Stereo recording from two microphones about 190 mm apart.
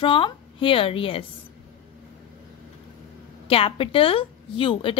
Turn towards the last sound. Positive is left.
turn(degrees=25)  # may be behind; listen again after turning